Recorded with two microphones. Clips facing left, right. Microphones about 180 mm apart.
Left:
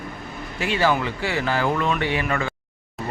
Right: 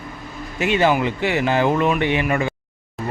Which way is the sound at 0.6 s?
20° right (ahead or behind).